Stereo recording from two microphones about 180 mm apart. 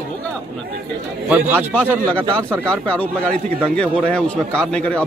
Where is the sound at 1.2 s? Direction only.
10° right (ahead or behind).